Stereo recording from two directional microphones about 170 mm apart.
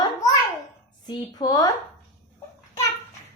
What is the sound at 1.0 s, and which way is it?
Speech, 20° left (ahead or behind).